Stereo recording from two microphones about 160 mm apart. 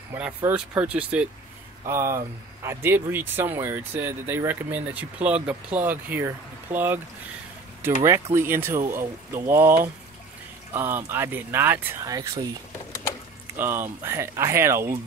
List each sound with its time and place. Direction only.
0.1 s speech: 10° right (ahead or behind)
13.6 s speech: 15° right (ahead or behind)